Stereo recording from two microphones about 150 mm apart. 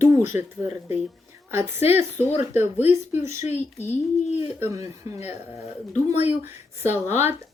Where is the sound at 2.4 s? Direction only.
15° right (ahead or behind).